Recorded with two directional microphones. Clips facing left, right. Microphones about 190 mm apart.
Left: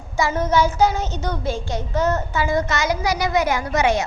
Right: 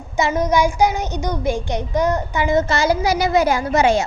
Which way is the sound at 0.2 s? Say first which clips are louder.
Right 2 dB; 15° right (ahead or behind).